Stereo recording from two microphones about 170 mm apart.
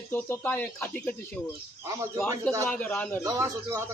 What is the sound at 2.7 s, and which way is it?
Speech, 10° left (ahead or behind).